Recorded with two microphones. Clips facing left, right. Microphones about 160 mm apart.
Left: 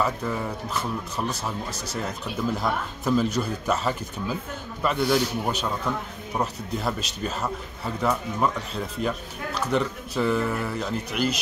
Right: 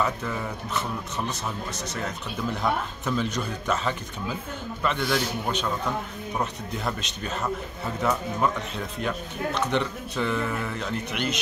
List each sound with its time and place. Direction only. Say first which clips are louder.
2.5 s speech: even; 5° left (ahead or behind)